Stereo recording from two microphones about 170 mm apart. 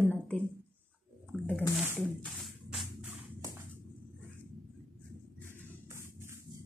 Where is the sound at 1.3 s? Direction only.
10° left (ahead or behind).